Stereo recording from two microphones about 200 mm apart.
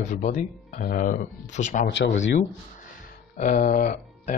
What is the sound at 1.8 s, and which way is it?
Speech, 65° left (ahead or behind).